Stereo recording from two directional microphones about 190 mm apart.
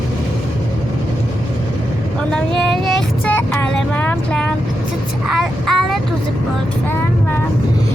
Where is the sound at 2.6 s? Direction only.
Centre (ahead or behind).